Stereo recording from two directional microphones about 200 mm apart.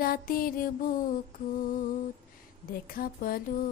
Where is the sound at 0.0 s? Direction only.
45° left (ahead or behind).